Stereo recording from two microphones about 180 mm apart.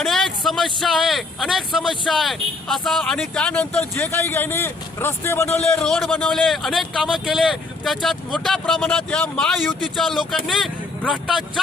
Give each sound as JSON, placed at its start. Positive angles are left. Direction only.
{"t": 0.0, "sound": "speech", "side_deg": 0}